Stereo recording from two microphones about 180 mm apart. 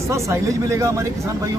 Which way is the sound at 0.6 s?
15° right (ahead or behind).